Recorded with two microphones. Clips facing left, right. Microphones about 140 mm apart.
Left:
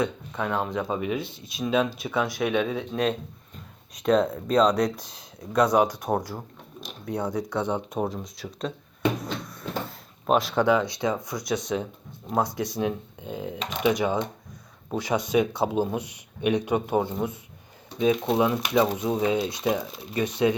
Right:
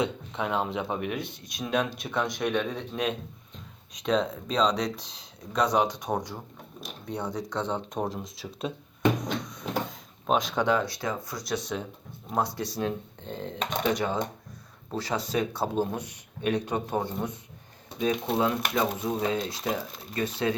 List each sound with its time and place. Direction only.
0.0 s speech: 5° right (ahead or behind)
4.0 s speech: 10° left (ahead or behind)
8.0 s speech: centre (ahead or behind)
9.2 s drawer open or close: 5° left (ahead or behind)
12.3 s speech: 15° left (ahead or behind)